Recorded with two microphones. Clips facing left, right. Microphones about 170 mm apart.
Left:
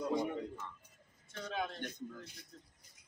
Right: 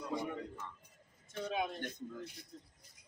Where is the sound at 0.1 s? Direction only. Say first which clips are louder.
Left 2 dB; 20° left (ahead or behind).